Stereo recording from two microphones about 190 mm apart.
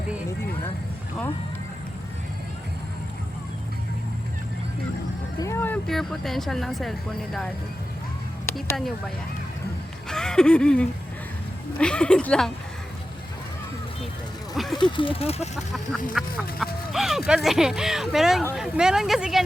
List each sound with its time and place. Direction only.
5.4 s speech: 15° left (ahead or behind)
8.5 s speech: centre (ahead or behind)
10.1 s a sound: 5° left (ahead or behind)
11.8 s speech: 5° left (ahead or behind)
14.7 s speech: 25° left (ahead or behind)
16.1 s speech: centre (ahead or behind)